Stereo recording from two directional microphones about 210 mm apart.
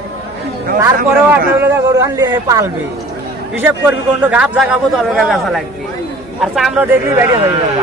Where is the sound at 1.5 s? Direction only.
15° right (ahead or behind).